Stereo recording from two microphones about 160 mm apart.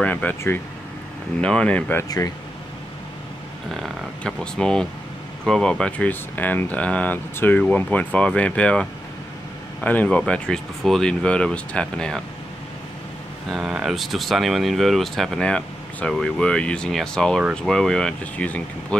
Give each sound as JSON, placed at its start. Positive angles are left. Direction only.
{"t": 0.0, "sound": "speech", "side_deg": 10}
{"t": 2.0, "sound": "speech", "side_deg": 20}
{"t": 3.8, "sound": "speech", "side_deg": 5}
{"t": 13.5, "sound": "speech", "side_deg": 0}